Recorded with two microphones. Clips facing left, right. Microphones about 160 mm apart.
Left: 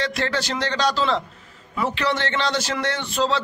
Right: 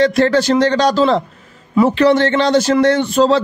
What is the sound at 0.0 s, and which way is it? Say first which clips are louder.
A man's voice: right 12 dB; 45° right (ahead or behind).